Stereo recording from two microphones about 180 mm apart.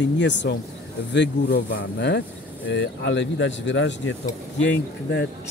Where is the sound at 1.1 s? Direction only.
70° left (ahead or behind); by 3.9 s 85° left.